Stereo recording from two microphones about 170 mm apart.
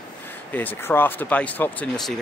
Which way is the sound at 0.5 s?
10° left (ahead or behind).